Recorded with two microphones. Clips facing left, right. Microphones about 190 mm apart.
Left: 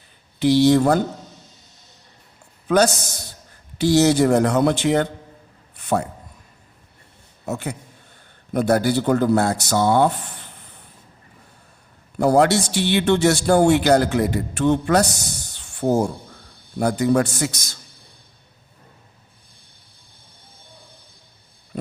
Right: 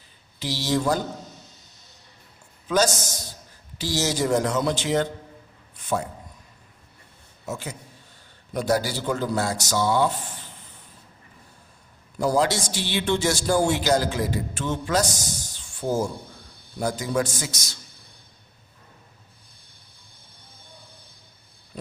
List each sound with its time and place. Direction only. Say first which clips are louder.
0.3 s speech: left 11 dB; 60° left (ahead or behind)
2.6 s a man's voice: left 5 dB; 60° left (ahead or behind)
5.7 s a sound: left 5 dB; 60° left (ahead or behind)
7.4 s a man's voice: left 6 dB; 60° left (ahead or behind)
12.2 s speech: left 6 dB; 60° left (ahead or behind)